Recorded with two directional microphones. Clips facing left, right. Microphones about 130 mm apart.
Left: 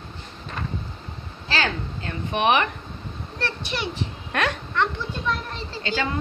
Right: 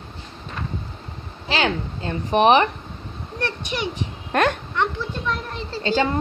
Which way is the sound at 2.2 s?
35° right (ahead or behind).